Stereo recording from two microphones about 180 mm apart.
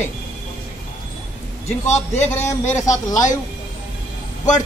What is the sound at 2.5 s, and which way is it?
Speech, 15° left (ahead or behind).